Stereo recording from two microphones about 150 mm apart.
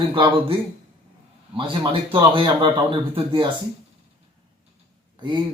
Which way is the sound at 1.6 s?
35° right (ahead or behind).